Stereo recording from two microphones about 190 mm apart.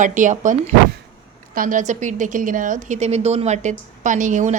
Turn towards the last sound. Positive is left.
turn(degrees=-40)  # may be behind; listen again after turning